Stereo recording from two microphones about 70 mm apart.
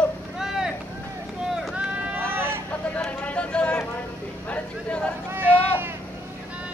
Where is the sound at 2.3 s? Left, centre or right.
Right.